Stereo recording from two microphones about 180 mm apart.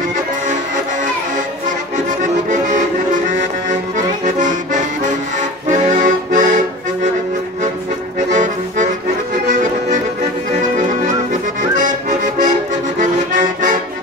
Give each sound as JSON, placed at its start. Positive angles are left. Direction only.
{"t": 4.4, "sound": "accordion", "side_deg": -45}
{"t": 8.3, "sound": "accordion", "side_deg": -45}
{"t": 13.0, "sound": "accordion", "side_deg": -45}